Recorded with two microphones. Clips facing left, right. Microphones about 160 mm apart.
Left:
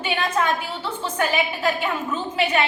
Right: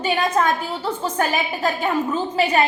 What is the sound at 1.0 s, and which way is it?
A woman's voice, 40° right (ahead or behind).